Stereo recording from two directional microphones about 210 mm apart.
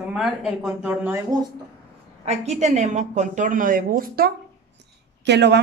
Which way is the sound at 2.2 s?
30° right (ahead or behind).